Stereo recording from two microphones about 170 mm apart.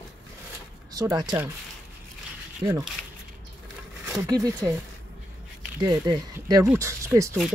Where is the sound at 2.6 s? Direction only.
15° right (ahead or behind).